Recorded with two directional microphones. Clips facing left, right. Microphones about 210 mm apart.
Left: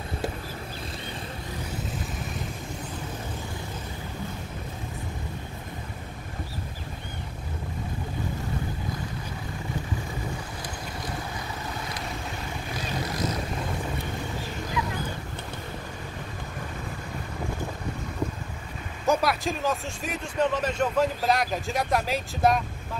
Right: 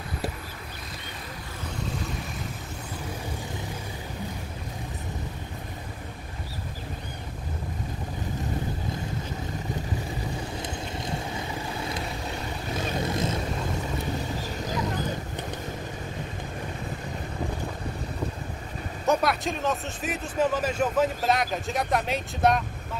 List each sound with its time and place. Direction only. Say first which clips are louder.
10.6 s boat: right 2 dB; 25° right (ahead or behind)
13.0 s vehicle: right 1 dB; 25° right (ahead or behind)
14.8 s wild animals: even; 40° right (ahead or behind)
19.0 s speech: even; centre (ahead or behind)